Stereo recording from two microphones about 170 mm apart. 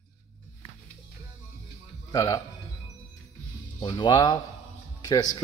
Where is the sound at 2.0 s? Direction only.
20° left (ahead or behind).